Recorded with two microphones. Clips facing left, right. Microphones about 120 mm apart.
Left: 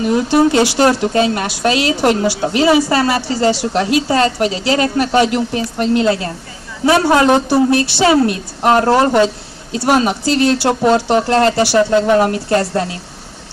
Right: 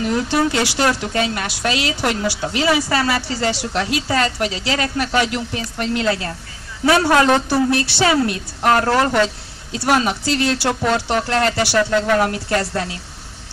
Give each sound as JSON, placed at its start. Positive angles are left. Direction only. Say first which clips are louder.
{"t": 0.1, "sound": "a woman's voice", "louder": "left 7 dB", "side_deg": 20}
{"t": 0.7, "sound": "a woman's voice", "louder": "left 6 dB", "side_deg": 30}